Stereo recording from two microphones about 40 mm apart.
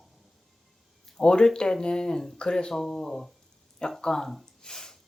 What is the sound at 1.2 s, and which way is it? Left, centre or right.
Speech, left.